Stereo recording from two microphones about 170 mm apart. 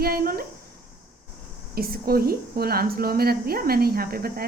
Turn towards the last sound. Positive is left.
turn(degrees=-60)  # may be behind; listen again after turning